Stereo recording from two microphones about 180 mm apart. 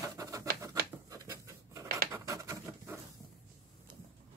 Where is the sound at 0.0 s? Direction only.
20° right (ahead or behind).